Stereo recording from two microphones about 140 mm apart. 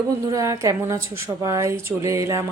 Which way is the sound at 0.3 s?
25° right (ahead or behind).